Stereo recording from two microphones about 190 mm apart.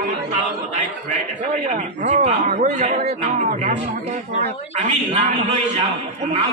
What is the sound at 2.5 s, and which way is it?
Music, 50° right (ahead or behind).